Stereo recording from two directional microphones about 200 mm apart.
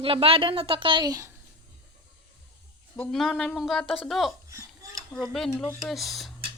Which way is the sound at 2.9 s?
5° left (ahead or behind).